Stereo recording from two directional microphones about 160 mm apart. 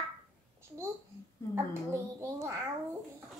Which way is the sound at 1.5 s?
15° right (ahead or behind).